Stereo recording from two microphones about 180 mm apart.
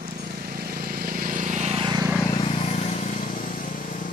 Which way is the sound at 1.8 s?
20° right (ahead or behind).